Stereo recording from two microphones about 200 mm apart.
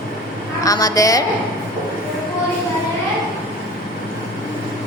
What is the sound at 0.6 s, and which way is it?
Speech, 15° left (ahead or behind).